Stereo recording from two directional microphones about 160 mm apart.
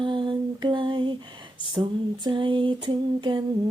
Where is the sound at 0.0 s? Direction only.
30° right (ahead or behind).